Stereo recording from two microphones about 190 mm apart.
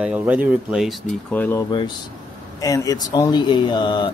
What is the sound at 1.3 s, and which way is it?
Speech, 10° left (ahead or behind).